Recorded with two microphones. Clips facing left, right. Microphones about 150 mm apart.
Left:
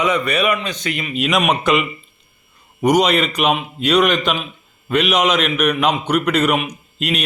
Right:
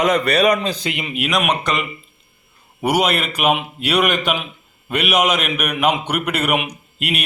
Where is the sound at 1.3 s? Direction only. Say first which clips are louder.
Left 4 dB; centre (ahead or behind).